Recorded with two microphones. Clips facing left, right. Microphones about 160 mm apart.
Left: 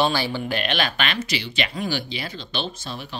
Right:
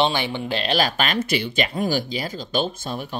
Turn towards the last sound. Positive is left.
turn(degrees=-50)  # may be behind; listen again after turning